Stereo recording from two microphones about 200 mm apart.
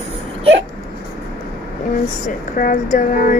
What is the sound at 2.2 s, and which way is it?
Speech, 40° left (ahead or behind).